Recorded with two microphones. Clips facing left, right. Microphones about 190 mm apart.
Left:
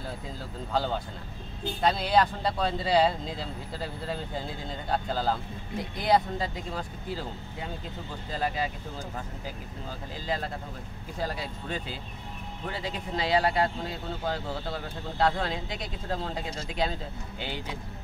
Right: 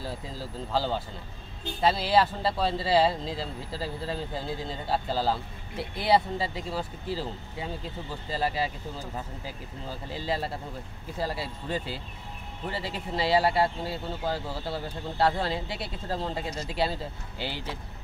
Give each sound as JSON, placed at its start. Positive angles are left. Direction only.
{"t": 0.0, "sound": "speech", "side_deg": 0}
{"t": 10.1, "sound": "speech", "side_deg": -5}